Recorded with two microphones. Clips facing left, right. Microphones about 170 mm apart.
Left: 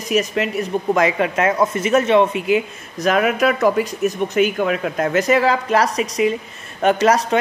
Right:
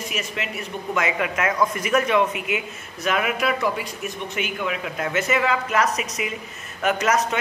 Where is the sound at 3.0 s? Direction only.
40° left (ahead or behind).